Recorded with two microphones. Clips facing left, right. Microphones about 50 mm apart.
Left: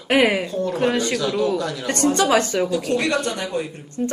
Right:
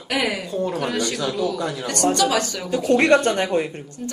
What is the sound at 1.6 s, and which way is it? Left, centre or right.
Speech, centre.